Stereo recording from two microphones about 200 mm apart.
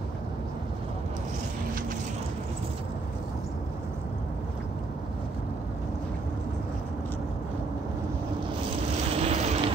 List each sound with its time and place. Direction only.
9.1 s vehicle: 30° right (ahead or behind)